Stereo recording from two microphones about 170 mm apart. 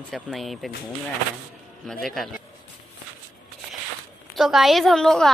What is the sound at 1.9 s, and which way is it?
Speech, 5° left (ahead or behind).